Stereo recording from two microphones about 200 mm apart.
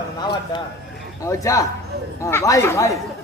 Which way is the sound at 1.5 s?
15° left (ahead or behind).